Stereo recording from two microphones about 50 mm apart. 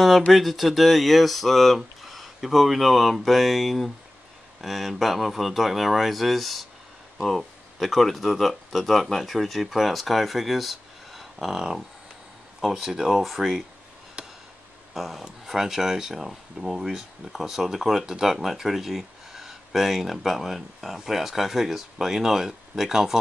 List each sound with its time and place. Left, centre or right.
0.3 s speech: centre
14.2 s chop: centre
15.0 s speech: centre